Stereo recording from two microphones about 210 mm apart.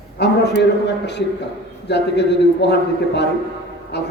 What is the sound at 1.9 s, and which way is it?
A man's voice, 55° left (ahead or behind).